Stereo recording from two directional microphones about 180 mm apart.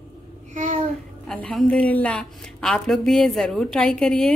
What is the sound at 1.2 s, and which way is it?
A woman's voice, 5° left (ahead or behind).